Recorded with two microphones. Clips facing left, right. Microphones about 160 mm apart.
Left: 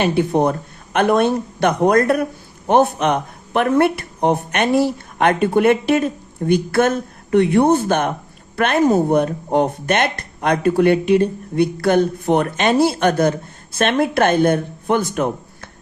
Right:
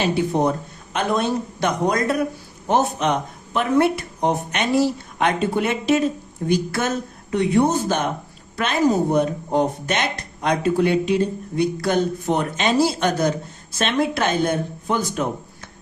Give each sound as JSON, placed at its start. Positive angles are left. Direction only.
{"t": 0.0, "sound": "speech", "side_deg": 55}